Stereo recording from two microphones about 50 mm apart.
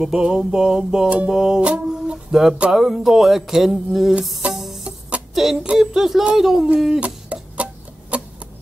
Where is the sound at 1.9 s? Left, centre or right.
Centre.